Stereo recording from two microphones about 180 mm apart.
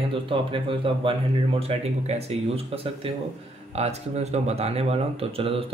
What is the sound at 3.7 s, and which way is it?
Speech, 35° right (ahead or behind).